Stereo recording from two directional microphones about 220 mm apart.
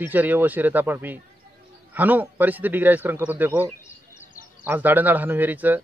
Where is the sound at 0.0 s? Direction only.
10° right (ahead or behind).